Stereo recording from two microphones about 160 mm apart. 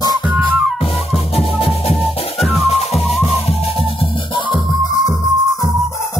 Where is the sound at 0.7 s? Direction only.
35° left (ahead or behind).